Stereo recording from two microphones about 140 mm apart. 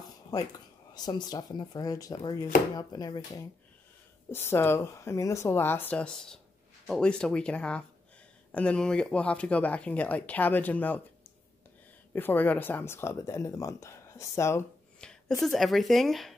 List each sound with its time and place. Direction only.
0.3 s speech: 25° left (ahead or behind)
4.3 s speech: 15° left (ahead or behind)
12.1 s speech: 15° left (ahead or behind)
15.0 s speech: 5° left (ahead or behind)